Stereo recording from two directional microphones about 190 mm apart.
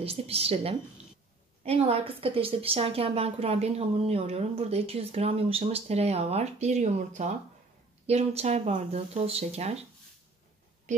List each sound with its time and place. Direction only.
0.0 s a woman's voice: 30° right (ahead or behind)